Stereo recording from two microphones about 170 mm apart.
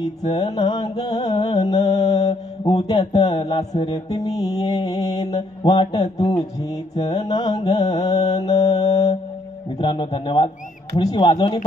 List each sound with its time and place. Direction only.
0.3 s mantra: 30° left (ahead or behind)
3.0 s mantra: 40° left (ahead or behind)